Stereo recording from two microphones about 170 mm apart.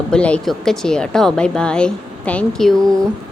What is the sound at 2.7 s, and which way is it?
Speech, 20° right (ahead or behind).